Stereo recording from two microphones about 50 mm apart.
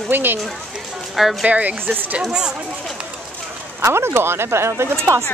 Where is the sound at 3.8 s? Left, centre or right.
Right.